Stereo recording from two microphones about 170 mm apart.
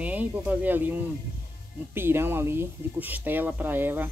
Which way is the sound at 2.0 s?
15° right (ahead or behind).